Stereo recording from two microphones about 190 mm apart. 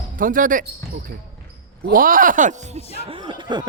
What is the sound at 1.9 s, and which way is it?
Speech, 45° right (ahead or behind).